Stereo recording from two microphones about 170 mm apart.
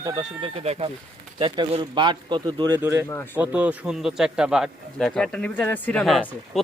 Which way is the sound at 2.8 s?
15° right (ahead or behind).